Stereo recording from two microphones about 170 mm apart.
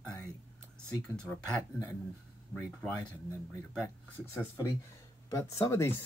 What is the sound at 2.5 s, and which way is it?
Speech, 10° left (ahead or behind).